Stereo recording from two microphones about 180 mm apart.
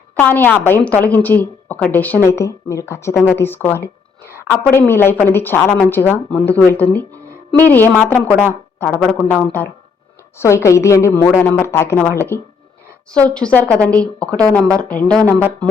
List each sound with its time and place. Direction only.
0.2 s speech: 10° left (ahead or behind)